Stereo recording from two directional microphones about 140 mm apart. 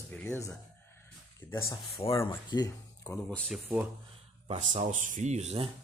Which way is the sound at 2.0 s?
35° left (ahead or behind).